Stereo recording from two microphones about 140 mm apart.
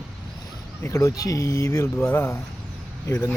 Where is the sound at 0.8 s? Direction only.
20° left (ahead or behind).